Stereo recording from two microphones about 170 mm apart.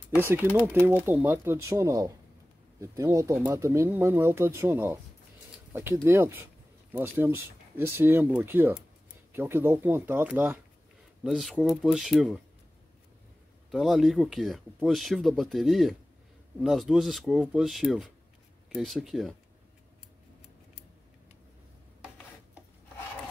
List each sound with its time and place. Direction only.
0.1 s speech: 10° right (ahead or behind)
11.2 s speech: centre (ahead or behind)
13.7 s speech: centre (ahead or behind)